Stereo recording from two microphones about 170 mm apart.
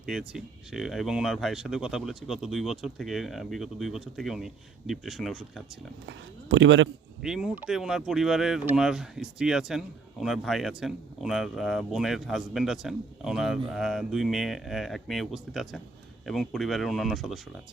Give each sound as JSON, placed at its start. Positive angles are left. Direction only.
{"t": 0.0, "sound": "speech", "side_deg": -5}
{"t": 6.1, "sound": "speech", "side_deg": -90}
{"t": 7.2, "sound": "speech", "side_deg": -5}